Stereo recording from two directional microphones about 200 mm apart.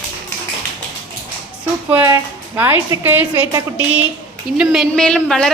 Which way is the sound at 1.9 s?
15° right (ahead or behind).